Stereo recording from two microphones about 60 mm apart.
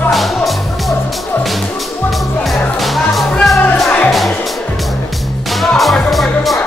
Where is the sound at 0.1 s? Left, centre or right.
Centre.